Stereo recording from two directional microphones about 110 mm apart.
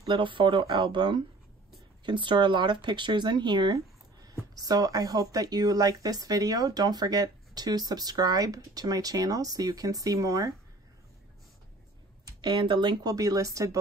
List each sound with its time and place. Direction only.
0.1 s speech: 50° right (ahead or behind); by 10.5 s 30° right (ahead or behind)
12.3 s speech: 40° right (ahead or behind)